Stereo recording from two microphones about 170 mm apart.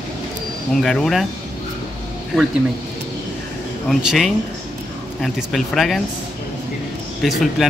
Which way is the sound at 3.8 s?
Centre (ahead or behind).